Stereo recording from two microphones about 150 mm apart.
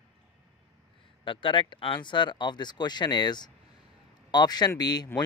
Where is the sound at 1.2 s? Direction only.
35° left (ahead or behind).